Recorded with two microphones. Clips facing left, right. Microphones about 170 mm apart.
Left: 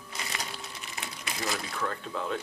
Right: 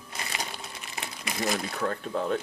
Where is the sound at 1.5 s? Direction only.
40° right (ahead or behind).